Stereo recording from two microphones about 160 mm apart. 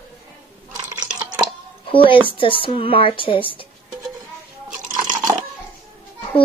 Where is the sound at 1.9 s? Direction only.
30° left (ahead or behind).